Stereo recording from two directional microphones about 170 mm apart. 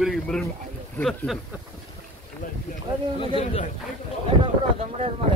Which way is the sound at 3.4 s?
45° left (ahead or behind).